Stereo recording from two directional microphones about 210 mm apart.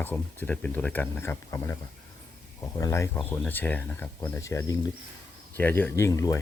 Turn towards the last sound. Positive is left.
turn(degrees=15)  # may be behind; listen again after turning